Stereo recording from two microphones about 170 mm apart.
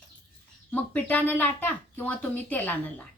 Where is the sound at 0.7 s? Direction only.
10° left (ahead or behind).